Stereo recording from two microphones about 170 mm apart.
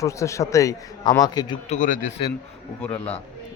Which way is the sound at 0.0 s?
20° left (ahead or behind).